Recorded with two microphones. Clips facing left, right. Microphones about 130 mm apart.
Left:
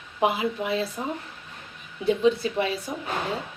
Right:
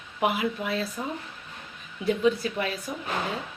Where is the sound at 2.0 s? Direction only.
25° left (ahead or behind).